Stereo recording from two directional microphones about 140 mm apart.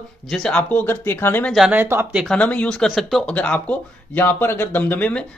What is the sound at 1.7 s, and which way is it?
Speech, 15° right (ahead or behind).